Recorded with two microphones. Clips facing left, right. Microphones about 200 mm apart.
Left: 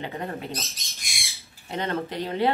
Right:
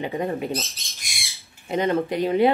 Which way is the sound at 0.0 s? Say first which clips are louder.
Right 7 dB; 15° right (ahead or behind).